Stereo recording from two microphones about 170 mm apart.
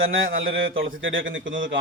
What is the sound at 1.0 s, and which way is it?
Speech, 90° right.